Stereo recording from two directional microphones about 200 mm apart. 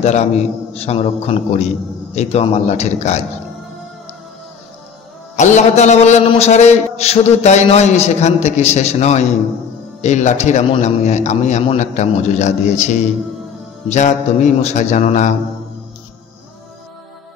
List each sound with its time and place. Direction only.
0.0 s a man's voice: 35° left (ahead or behind)
5.3 s a man's voice: 35° left (ahead or behind)